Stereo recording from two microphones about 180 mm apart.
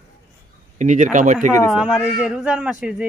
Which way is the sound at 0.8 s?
45° right (ahead or behind).